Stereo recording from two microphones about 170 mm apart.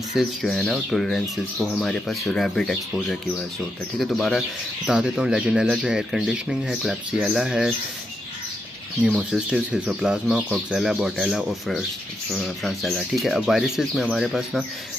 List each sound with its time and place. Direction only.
0.1 s speech: centre (ahead or behind)
9.0 s speech: centre (ahead or behind)